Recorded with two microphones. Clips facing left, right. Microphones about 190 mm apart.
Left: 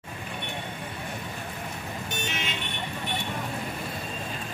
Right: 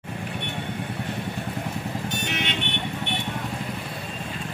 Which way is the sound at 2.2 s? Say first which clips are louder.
Right 4 dB; 70° right (ahead or behind).